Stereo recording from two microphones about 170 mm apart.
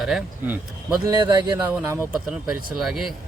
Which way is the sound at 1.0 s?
20° right (ahead or behind).